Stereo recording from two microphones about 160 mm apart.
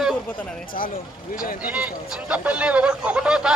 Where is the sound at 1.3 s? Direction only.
60° left (ahead or behind).